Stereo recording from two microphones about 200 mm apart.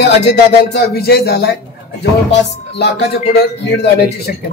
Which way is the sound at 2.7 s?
55° left (ahead or behind).